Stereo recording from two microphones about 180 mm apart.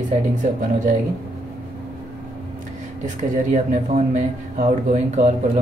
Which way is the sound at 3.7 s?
45° right (ahead or behind).